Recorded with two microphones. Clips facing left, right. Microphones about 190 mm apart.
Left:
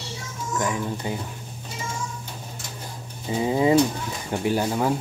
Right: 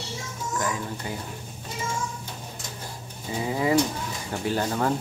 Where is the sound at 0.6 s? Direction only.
20° left (ahead or behind).